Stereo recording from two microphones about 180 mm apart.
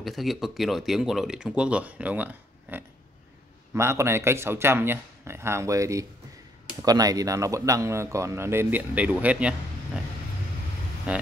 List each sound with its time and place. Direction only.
0.0 s speech: centre (ahead or behind)
11.1 s speech: 5° right (ahead or behind)